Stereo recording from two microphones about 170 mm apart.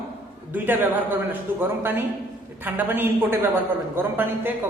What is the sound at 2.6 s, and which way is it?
A man's voice, 10° right (ahead or behind).